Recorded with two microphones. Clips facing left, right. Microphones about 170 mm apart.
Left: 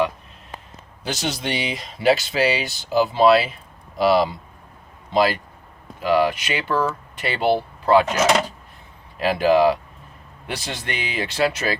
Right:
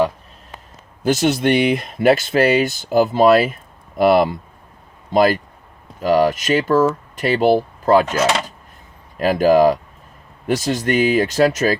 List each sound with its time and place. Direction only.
1.0 s speech: 50° right (ahead or behind)
9.1 s speech: 45° right (ahead or behind)